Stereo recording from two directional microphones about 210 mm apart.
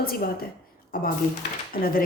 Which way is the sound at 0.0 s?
45° left (ahead or behind).